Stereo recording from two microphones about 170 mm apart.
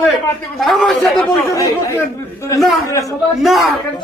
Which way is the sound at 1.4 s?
15° left (ahead or behind).